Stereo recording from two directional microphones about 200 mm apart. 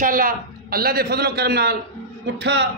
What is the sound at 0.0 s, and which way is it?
A man's voice, 45° right (ahead or behind).